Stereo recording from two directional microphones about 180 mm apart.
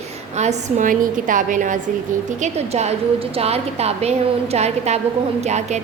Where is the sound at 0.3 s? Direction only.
40° right (ahead or behind).